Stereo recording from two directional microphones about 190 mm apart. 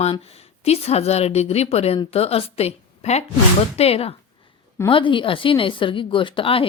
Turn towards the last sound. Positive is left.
turn(degrees=30)  # may be behind; listen again after turning